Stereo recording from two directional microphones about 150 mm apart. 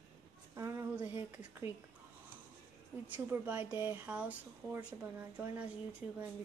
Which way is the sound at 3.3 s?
10° right (ahead or behind).